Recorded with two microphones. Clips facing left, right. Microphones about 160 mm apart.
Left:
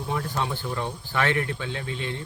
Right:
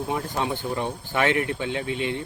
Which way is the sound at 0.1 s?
15° right (ahead or behind).